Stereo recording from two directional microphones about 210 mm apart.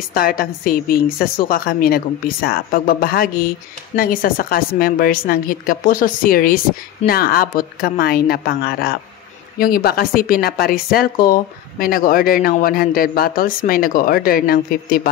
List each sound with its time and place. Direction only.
0.1 s a woman's voice: 45° left (ahead or behind)